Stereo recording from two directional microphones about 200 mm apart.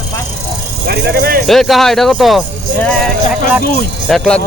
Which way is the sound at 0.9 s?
55° right (ahead or behind).